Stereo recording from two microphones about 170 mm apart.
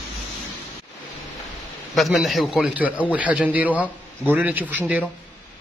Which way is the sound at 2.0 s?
Centre (ahead or behind).